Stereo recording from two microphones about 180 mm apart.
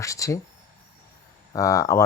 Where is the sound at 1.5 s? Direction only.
20° left (ahead or behind).